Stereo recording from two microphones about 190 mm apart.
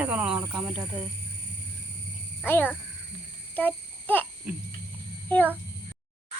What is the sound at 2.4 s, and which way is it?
Speech, 10° left (ahead or behind).